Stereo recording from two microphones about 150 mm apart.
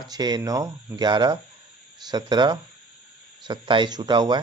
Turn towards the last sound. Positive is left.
turn(degrees=-30)  # may be behind; listen again after turning